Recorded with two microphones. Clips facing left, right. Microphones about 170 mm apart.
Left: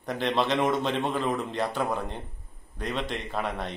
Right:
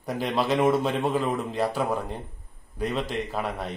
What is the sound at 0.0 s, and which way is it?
A man's voice, 5° right (ahead or behind).